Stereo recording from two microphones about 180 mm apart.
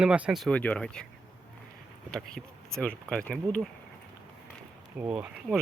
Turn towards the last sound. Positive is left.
turn(degrees=0)  # may be behind; listen again after turning